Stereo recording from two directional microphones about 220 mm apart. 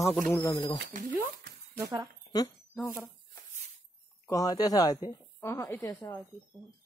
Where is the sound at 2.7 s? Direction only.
5° left (ahead or behind).